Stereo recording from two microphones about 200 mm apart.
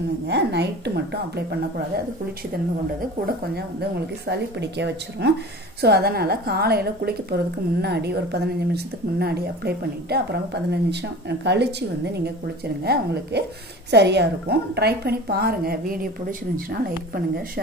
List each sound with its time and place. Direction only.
0.3 s speech: 55° right (ahead or behind)
4.3 s a woman's voice: 55° right (ahead or behind)